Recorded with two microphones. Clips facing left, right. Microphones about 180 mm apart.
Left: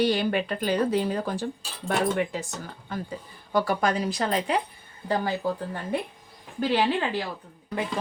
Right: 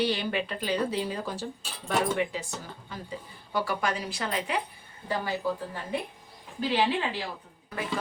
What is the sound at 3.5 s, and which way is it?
A woman's voice, 40° left (ahead or behind).